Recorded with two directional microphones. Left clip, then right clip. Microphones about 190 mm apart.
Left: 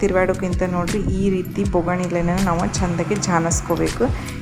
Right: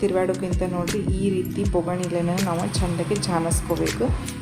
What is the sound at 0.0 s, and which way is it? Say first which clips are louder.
A woman's voice: left 4 dB; 15° left (ahead or behind).